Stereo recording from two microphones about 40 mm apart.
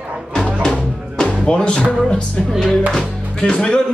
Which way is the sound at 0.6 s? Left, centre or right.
Centre.